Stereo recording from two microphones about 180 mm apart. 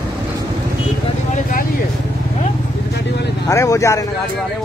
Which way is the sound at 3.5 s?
15° left (ahead or behind).